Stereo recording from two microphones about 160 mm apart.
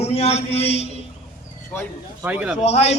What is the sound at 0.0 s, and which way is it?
Speech, 40° left (ahead or behind).